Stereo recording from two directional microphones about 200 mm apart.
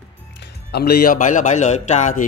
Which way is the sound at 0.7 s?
50° left (ahead or behind).